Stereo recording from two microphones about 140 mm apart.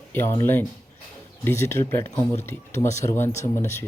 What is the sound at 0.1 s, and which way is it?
Speech, 20° left (ahead or behind).